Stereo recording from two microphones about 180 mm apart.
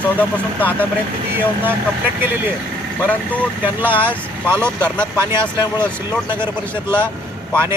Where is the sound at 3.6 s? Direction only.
10° right (ahead or behind).